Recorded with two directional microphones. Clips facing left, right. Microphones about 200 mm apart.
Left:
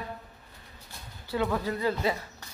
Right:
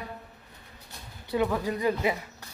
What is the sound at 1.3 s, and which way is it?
Speech, 20° right (ahead or behind).